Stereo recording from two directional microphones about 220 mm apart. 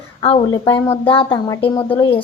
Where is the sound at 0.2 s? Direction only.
25° left (ahead or behind).